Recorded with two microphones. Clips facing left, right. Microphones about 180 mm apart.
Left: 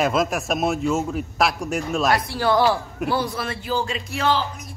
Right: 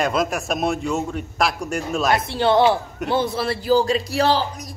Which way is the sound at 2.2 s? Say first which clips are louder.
Right 3 dB; 25° right (ahead or behind).